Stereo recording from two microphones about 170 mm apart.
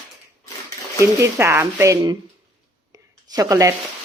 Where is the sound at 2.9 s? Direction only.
20° right (ahead or behind).